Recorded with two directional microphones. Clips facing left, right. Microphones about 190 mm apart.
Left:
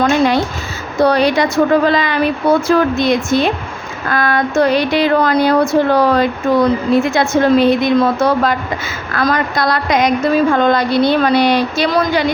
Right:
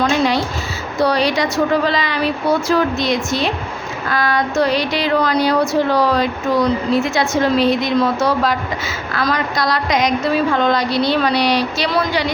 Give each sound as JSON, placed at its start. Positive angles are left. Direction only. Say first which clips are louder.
{"t": 0.9, "sound": "speech", "louder": "left 4 dB", "side_deg": 55}